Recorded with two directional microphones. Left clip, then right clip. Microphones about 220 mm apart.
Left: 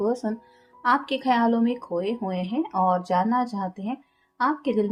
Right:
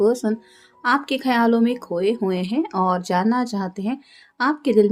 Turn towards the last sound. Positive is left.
turn(degrees=-35)  # may be behind; listen again after turning